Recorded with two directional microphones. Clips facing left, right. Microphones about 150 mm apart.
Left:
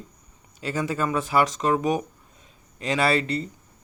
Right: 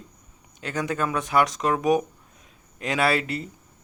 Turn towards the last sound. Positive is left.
turn(degrees=-5)  # may be behind; listen again after turning